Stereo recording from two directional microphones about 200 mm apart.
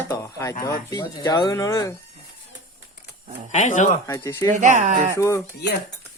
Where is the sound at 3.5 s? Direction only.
35° left (ahead or behind).